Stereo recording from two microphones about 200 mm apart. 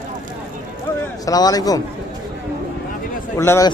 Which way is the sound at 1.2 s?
20° left (ahead or behind).